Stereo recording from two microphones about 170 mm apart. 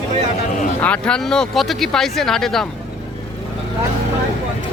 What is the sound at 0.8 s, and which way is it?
Speech, 5° left (ahead or behind).